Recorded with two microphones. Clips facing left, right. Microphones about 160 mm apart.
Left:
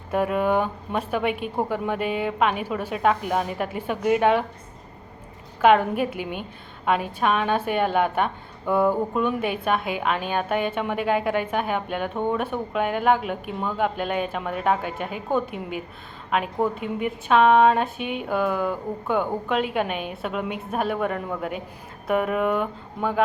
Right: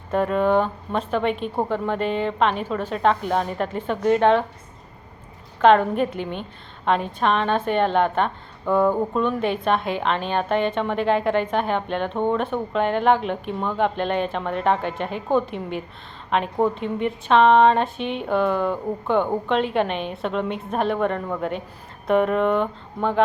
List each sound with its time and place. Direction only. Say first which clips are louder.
0.1 s a woman's voice: right 2 dB; 10° left (ahead or behind)
5.6 s a woman's voice: right 2 dB; 10° left (ahead or behind)